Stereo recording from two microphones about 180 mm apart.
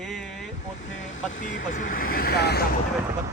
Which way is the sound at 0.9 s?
40° left (ahead or behind).